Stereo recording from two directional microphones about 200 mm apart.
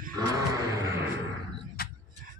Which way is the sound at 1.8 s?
50° left (ahead or behind).